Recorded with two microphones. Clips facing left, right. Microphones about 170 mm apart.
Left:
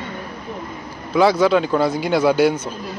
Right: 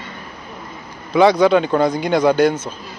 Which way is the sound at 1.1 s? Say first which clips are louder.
Right 2 dB; 5° left (ahead or behind).